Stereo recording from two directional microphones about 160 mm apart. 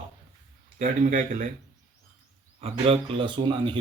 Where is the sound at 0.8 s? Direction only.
55° right (ahead or behind).